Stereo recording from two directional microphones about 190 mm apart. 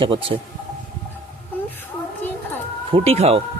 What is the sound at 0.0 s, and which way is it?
Speech, 25° right (ahead or behind).